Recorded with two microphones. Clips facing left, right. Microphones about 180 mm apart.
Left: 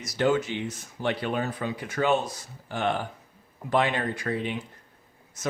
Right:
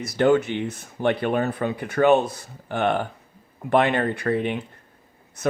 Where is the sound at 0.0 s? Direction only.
60° right (ahead or behind).